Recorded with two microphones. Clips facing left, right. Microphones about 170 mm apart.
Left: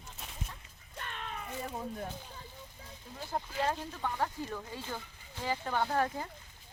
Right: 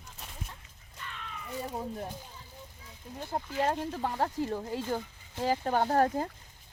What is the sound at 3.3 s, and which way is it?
Speech, 30° right (ahead or behind).